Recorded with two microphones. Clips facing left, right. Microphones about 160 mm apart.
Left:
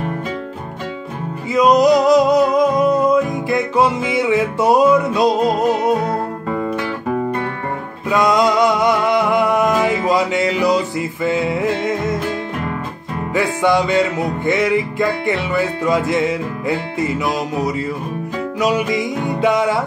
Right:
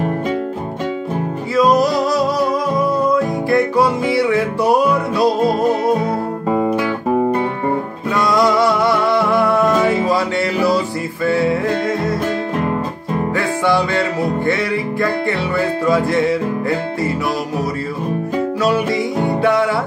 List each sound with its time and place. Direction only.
1.5 s music: 20° left (ahead or behind)
8.1 s music: 20° left (ahead or behind)
13.3 s music: 20° left (ahead or behind)